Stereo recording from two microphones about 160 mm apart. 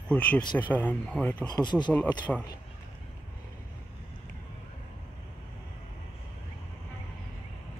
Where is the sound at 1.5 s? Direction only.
25° left (ahead or behind).